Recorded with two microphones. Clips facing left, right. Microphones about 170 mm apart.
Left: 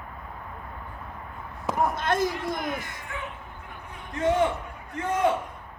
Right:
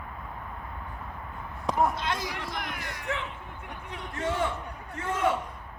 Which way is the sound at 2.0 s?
50° left (ahead or behind).